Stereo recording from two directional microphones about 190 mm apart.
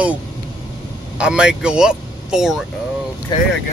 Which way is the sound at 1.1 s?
5° right (ahead or behind).